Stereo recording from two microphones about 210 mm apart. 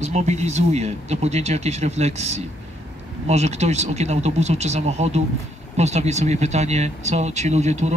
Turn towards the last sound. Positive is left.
turn(degrees=-35)  # may be behind; listen again after turning